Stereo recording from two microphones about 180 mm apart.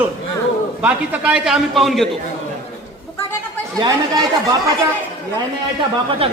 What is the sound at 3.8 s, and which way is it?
Speech, 20° right (ahead or behind).